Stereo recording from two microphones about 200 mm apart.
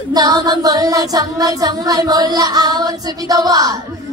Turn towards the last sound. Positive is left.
turn(degrees=-20)  # may be behind; listen again after turning